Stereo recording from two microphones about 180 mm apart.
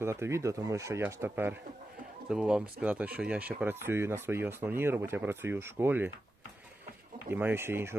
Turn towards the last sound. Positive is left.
turn(degrees=-15)  # may be behind; listen again after turning